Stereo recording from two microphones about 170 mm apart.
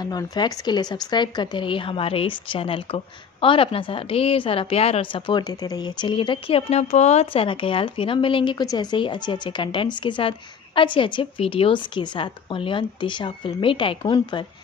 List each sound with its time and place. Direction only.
0.0 s speech: 25° left (ahead or behind)